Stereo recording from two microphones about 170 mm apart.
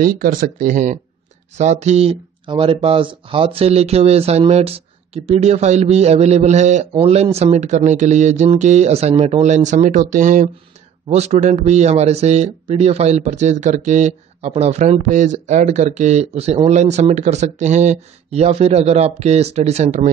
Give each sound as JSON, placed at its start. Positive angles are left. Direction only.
{"t": 0.0, "sound": "speech", "side_deg": -55}